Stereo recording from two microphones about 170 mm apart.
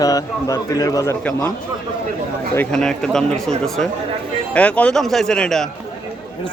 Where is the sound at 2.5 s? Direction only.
10° left (ahead or behind).